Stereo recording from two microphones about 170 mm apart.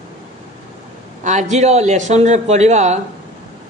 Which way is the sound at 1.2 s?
45° right (ahead or behind).